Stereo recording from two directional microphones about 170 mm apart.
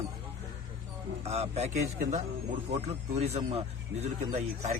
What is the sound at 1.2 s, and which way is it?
Speech, 35° right (ahead or behind).